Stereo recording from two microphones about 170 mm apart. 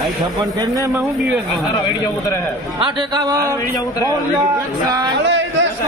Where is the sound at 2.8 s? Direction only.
30° right (ahead or behind).